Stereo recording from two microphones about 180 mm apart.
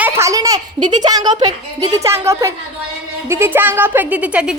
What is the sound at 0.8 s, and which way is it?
Speech, 45° right (ahead or behind).